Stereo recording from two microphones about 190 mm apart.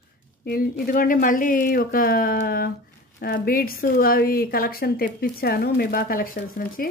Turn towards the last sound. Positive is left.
turn(degrees=50)  # may be behind; listen again after turning